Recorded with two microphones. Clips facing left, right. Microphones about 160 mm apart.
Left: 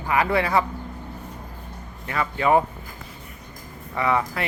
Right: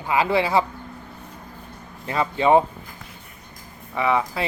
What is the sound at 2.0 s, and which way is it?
Speech, 25° right (ahead or behind).